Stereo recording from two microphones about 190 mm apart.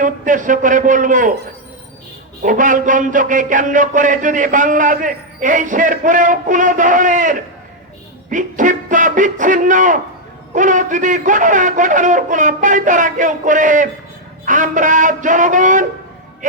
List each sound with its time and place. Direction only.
0.0 s speech: 45° right (ahead or behind)
2.4 s speech: 45° right (ahead or behind)